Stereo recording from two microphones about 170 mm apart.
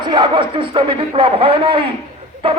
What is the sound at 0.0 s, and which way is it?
A man's voice, 30° right (ahead or behind).